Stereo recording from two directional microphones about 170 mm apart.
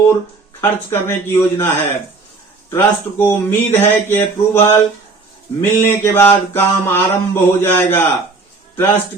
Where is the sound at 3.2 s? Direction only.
10° left (ahead or behind).